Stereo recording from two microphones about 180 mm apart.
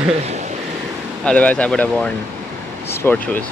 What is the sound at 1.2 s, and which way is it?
Speech, 5° left (ahead or behind).